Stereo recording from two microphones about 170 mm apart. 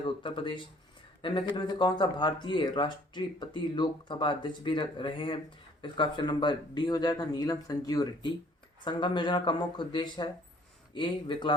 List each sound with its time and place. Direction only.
0.0 s speech: 30° left (ahead or behind)